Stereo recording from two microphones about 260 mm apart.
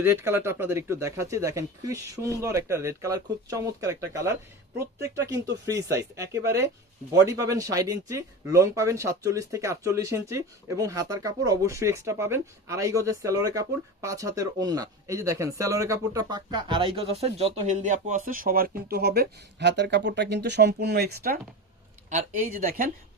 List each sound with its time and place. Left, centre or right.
0.0 s speech: centre; by 22.9 s right